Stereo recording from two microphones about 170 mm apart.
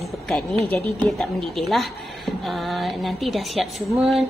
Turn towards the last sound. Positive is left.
turn(degrees=0)  # may be behind; listen again after turning